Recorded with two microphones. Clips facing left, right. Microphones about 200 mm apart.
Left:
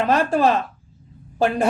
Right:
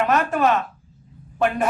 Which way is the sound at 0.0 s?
30° left (ahead or behind).